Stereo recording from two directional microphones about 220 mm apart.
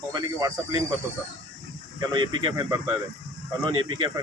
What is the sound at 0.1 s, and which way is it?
Speech, 15° right (ahead or behind).